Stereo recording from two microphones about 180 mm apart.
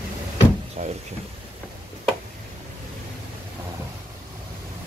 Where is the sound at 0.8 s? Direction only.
40° right (ahead or behind).